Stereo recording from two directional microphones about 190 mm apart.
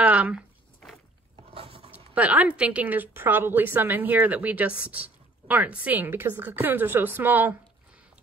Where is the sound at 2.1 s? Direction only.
5° right (ahead or behind).